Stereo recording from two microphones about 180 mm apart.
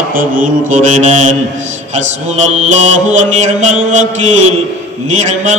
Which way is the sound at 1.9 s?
40° right (ahead or behind).